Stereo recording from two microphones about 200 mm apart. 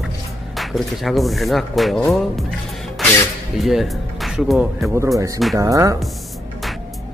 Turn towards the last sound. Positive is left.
turn(degrees=-15)  # may be behind; listen again after turning